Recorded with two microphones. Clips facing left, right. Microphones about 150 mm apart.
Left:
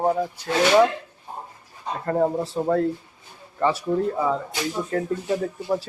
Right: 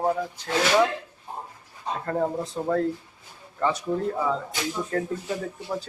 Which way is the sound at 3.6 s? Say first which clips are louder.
Left 3 dB; 5° left (ahead or behind).